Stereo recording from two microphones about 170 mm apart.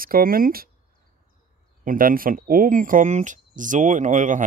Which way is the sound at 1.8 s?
55° right (ahead or behind).